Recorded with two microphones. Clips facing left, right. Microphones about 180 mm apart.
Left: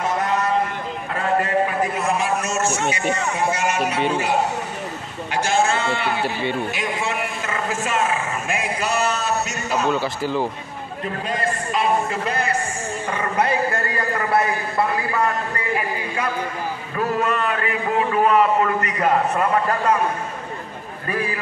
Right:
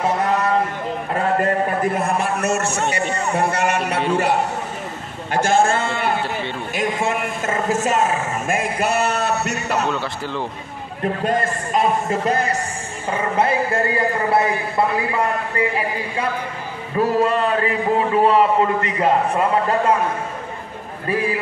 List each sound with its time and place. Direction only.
1.4 s a man's voice: 45° right (ahead or behind)
3.0 s speech: 35° right (ahead or behind)
3.3 s music: 60° right (ahead or behind)
5.3 s a man's voice: 50° right (ahead or behind)
9.8 s speech: 5° left (ahead or behind)
11.2 s a man's voice: 50° right (ahead or behind)
13.2 s a man's voice: 25° right (ahead or behind)
16.9 s a man's voice: 30° right (ahead or behind)